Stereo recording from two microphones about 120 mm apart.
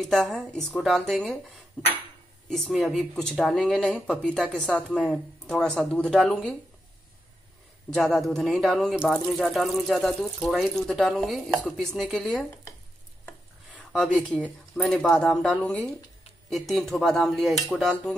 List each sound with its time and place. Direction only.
0.0 s speech: centre (ahead or behind)
2.5 s speech: centre (ahead or behind)
7.9 s speech: centre (ahead or behind)
13.7 s speech: 5° left (ahead or behind)